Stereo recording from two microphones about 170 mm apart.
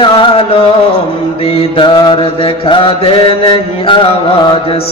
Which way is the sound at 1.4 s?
35° left (ahead or behind).